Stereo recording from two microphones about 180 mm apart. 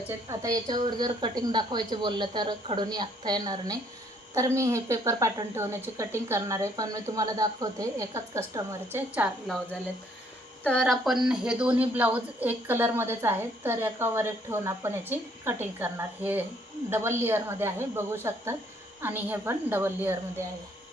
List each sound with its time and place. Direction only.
0.3 s a woman's voice: 20° right (ahead or behind)
10.6 s a woman's voice: 5° left (ahead or behind); by 20.1 s 10° right (ahead or behind)